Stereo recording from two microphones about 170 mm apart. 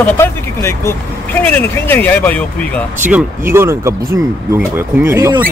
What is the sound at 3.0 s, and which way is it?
Speech, 10° right (ahead or behind).